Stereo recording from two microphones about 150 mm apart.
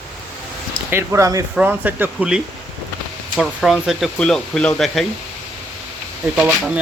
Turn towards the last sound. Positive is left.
turn(degrees=-5)  # may be behind; listen again after turning